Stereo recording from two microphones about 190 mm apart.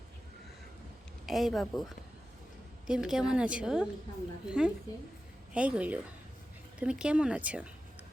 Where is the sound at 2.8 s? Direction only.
5° right (ahead or behind).